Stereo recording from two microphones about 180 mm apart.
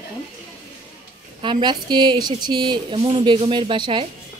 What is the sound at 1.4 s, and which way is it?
A woman's voice, 25° right (ahead or behind).